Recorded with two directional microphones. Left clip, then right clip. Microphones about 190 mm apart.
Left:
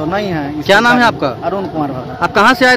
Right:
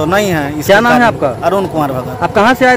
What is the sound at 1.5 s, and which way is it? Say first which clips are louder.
Speech: right 5 dB; 10° right (ahead or behind).